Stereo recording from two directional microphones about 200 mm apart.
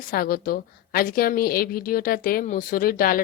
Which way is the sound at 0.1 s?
45° left (ahead or behind).